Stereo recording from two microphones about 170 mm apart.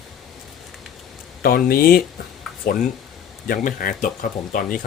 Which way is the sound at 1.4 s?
60° left (ahead or behind).